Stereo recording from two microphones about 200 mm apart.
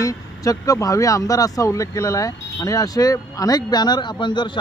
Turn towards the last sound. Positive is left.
turn(degrees=25)  # may be behind; listen again after turning